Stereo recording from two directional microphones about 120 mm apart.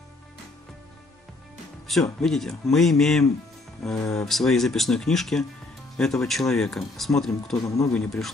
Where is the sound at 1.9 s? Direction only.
5° left (ahead or behind).